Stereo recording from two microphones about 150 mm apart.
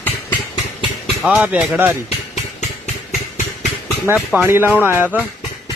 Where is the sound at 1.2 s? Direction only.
10° right (ahead or behind).